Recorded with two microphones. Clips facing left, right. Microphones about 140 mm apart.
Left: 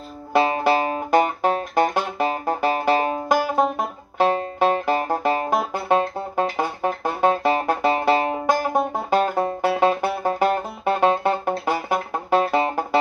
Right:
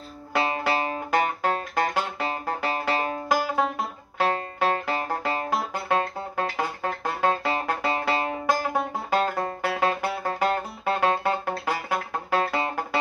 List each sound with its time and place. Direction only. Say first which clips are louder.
0.4 s music: left 6 dB; 25° left (ahead or behind)